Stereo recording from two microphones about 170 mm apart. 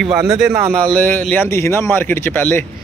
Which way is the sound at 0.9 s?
10° left (ahead or behind).